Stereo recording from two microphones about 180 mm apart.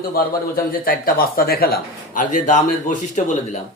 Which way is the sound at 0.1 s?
55° left (ahead or behind).